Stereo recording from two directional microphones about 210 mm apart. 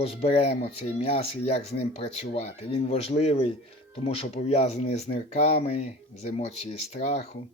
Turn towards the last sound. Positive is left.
turn(degrees=30)  # may be behind; listen again after turning